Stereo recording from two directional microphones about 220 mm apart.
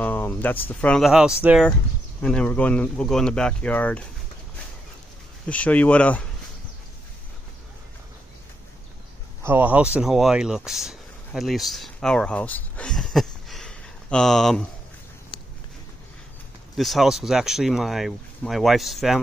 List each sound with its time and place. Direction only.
0.0 s speech: 5° left (ahead or behind)
5.5 s speech: 5° left (ahead or behind)
9.4 s speech: 10° right (ahead or behind)
15.3 s a sound: 20° left (ahead or behind)
16.7 s speech: centre (ahead or behind)